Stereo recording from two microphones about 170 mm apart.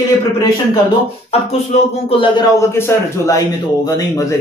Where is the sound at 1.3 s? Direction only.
40° left (ahead or behind).